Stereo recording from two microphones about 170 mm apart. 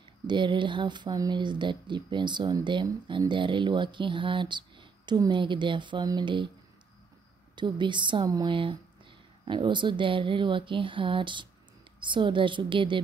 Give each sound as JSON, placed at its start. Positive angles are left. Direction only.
{"t": 0.3, "sound": "speech", "side_deg": -30}
{"t": 7.5, "sound": "speech", "side_deg": -25}